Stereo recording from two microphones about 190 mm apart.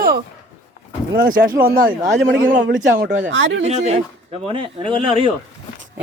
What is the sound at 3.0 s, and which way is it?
Speech, 45° right (ahead or behind).